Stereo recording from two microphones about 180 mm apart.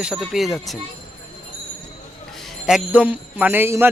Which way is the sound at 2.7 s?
5° right (ahead or behind).